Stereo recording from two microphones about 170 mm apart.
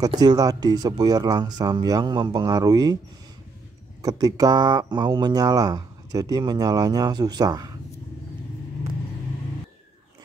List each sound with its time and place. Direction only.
0.2 s speech: 20° right (ahead or behind)
4.0 s speech: 20° right (ahead or behind)